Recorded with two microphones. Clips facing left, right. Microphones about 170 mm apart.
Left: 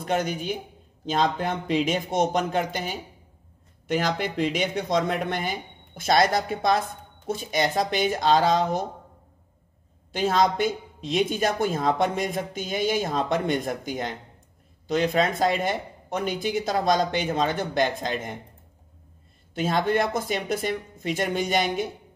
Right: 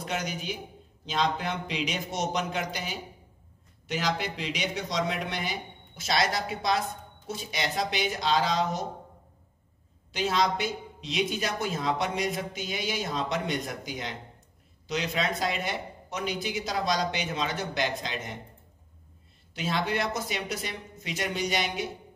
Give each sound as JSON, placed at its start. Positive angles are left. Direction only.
{"t": 0.0, "sound": "speech", "side_deg": 50}
{"t": 10.1, "sound": "speech", "side_deg": 50}
{"t": 19.5, "sound": "speech", "side_deg": 50}